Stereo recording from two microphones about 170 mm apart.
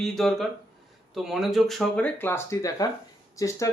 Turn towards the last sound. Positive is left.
turn(degrees=20)  # may be behind; listen again after turning